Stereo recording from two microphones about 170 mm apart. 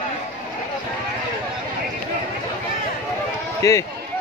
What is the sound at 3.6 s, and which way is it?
Speech, 20° left (ahead or behind).